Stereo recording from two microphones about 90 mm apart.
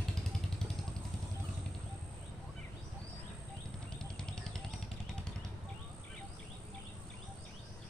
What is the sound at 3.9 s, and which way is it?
Vehicle, 10° left (ahead or behind).